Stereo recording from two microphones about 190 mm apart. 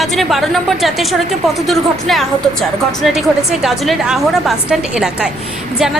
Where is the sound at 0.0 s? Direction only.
Centre (ahead or behind).